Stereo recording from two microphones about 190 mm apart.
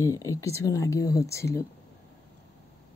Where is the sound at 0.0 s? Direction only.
15° left (ahead or behind).